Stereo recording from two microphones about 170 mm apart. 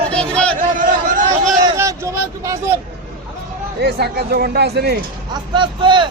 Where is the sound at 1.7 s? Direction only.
15° right (ahead or behind).